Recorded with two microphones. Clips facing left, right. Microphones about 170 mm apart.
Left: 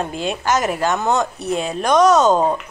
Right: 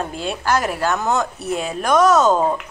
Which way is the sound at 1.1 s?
Centre (ahead or behind).